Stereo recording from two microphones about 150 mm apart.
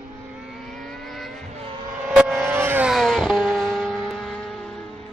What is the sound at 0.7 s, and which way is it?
Vehicle, centre (ahead or behind).